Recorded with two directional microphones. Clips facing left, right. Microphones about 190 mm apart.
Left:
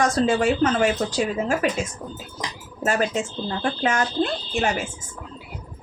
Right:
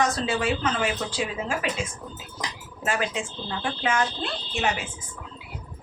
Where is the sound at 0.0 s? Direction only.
45° left (ahead or behind).